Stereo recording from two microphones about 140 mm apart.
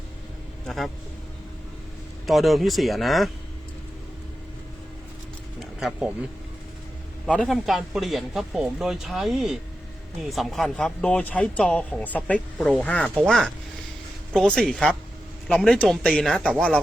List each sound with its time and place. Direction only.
2.2 s speech: centre (ahead or behind)
5.5 s a sound: 5° right (ahead or behind)
7.3 s speech: 10° left (ahead or behind)
12.5 s speech: centre (ahead or behind)